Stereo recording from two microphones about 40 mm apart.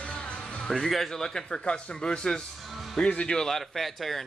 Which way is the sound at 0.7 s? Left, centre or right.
Centre.